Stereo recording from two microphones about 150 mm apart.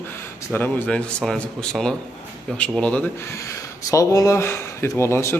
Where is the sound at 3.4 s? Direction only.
20° left (ahead or behind).